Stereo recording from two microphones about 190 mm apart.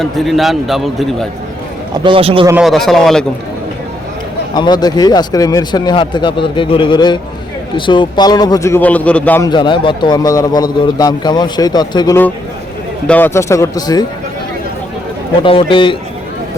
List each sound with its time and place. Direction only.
0.0 s a man's voice: centre (ahead or behind)
2.0 s a man's voice: 30° right (ahead or behind)
2.5 s a man's voice: 5° right (ahead or behind)
4.5 s a man's voice: 20° left (ahead or behind)
9.5 s a man's voice: 25° left (ahead or behind)
15.4 s a man's voice: 25° left (ahead or behind)